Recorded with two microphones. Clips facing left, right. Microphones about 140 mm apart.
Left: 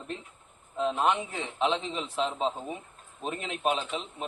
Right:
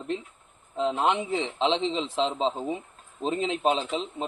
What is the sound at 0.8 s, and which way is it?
A man's voice, 20° right (ahead or behind).